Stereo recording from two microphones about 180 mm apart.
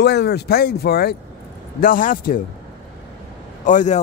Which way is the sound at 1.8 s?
50° left (ahead or behind).